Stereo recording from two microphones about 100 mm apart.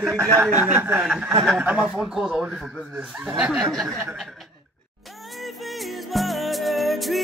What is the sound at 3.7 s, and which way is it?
Speech, centre (ahead or behind).